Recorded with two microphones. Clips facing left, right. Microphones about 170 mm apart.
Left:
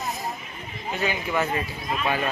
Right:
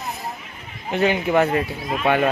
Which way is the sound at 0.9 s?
60° right (ahead or behind).